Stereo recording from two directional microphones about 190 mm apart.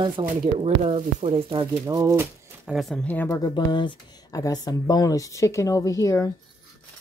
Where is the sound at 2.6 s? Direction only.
Centre (ahead or behind).